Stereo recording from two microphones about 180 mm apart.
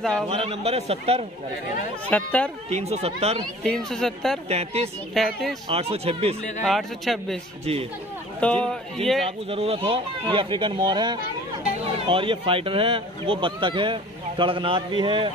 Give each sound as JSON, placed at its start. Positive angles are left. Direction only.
{"t": 0.3, "sound": "a man's voice", "side_deg": -35}
{"t": 2.0, "sound": "speech", "side_deg": 10}
{"t": 2.7, "sound": "a man's voice", "side_deg": -35}
{"t": 3.6, "sound": "speech", "side_deg": 5}
{"t": 4.5, "sound": "a man's voice", "side_deg": -35}
{"t": 5.1, "sound": "speech", "side_deg": 0}
{"t": 5.7, "sound": "a man's voice", "side_deg": -35}
{"t": 6.6, "sound": "speech", "side_deg": 0}
{"t": 8.4, "sound": "speech", "side_deg": 5}
{"t": 9.5, "sound": "speech", "side_deg": -35}